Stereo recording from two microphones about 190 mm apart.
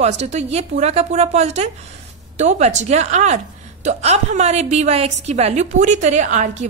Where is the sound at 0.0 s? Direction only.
35° right (ahead or behind).